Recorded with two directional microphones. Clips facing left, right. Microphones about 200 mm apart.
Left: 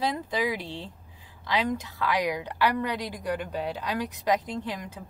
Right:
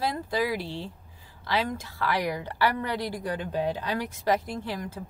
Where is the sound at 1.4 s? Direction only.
15° left (ahead or behind).